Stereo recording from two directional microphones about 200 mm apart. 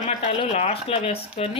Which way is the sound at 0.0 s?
35° left (ahead or behind).